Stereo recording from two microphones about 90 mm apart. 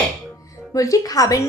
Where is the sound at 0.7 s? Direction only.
40° left (ahead or behind).